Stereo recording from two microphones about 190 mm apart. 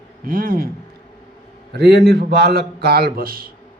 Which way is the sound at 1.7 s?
60° right (ahead or behind).